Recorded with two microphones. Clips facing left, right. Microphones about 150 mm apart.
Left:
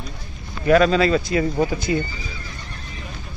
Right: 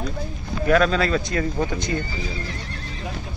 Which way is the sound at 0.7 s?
Centre (ahead or behind).